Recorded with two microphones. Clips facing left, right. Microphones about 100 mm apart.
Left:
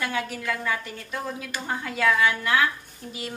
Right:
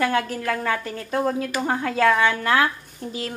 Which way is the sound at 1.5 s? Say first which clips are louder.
Right 7 dB; 65° right (ahead or behind).